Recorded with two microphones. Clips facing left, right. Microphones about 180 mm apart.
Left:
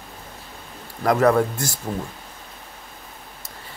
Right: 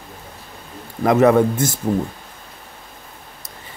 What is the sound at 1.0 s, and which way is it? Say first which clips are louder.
Speech: right 4 dB; 20° right (ahead or behind).